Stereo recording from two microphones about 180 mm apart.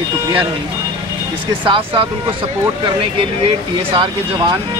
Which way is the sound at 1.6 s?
30° right (ahead or behind).